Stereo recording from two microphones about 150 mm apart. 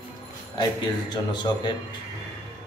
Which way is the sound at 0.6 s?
30° left (ahead or behind).